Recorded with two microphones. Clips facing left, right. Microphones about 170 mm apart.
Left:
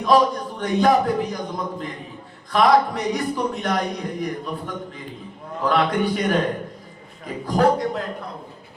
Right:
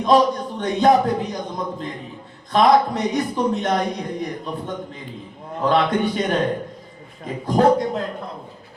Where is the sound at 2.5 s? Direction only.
20° right (ahead or behind).